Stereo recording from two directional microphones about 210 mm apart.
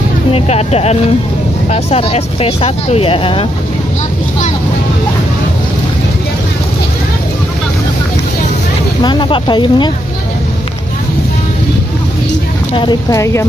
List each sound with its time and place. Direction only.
0.3 s speech: 30° left (ahead or behind)
9.0 s speech: 20° left (ahead or behind)
12.7 s speech: 20° left (ahead or behind)